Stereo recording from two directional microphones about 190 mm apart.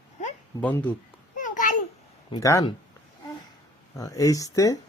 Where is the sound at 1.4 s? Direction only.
45° left (ahead or behind).